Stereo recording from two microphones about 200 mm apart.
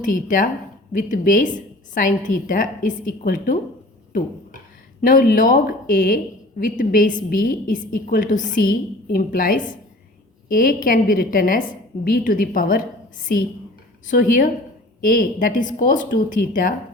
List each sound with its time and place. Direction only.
0.0 s a woman's voice: 40° left (ahead or behind)
4.9 s a woman's voice: 45° left (ahead or behind)
14.1 s a woman's voice: 40° left (ahead or behind)